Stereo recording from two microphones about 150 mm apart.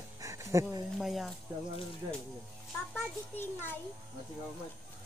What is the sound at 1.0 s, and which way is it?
Speech, centre (ahead or behind).